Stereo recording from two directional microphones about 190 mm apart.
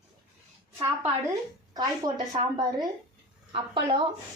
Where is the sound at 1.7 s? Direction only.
20° right (ahead or behind).